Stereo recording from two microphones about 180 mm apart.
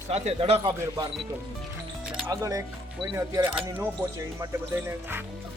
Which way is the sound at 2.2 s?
20° right (ahead or behind).